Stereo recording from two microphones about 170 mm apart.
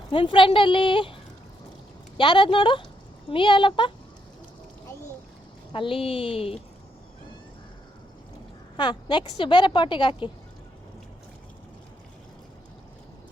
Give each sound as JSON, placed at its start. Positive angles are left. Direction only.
{"t": 0.1, "sound": "speech", "side_deg": 30}
{"t": 5.7, "sound": "speech", "side_deg": 30}
{"t": 8.7, "sound": "speech", "side_deg": 25}